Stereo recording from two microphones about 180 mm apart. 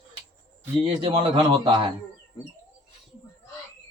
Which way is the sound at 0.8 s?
30° right (ahead or behind).